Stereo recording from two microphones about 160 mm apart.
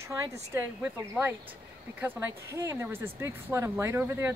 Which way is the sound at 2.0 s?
15° right (ahead or behind).